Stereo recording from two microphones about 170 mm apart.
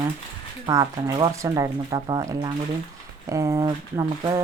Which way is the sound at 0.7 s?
20° right (ahead or behind).